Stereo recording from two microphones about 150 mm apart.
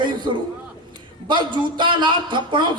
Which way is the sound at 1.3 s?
30° right (ahead or behind).